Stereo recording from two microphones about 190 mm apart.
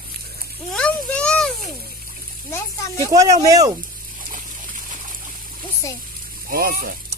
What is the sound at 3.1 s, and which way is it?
Speech, 20° right (ahead or behind).